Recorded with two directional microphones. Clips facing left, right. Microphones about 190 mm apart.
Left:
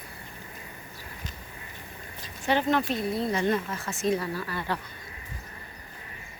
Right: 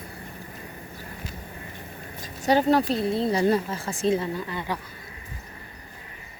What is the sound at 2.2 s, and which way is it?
Speech, 40° right (ahead or behind).